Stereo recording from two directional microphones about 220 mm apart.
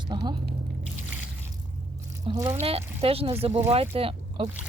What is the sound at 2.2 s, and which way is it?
Speech, 15° right (ahead or behind).